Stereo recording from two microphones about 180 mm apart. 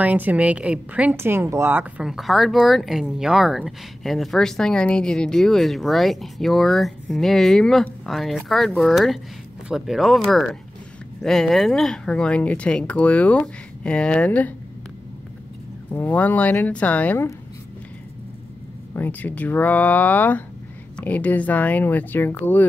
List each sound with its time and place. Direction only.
0.0 s a woman's voice: 10° right (ahead or behind); by 14.5 s 10° left (ahead or behind)
15.9 s speech: 10° left (ahead or behind)
18.9 s speech: 10° left (ahead or behind)